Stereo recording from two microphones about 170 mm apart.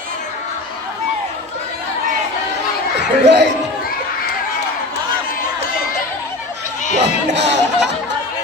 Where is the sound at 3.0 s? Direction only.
85° right.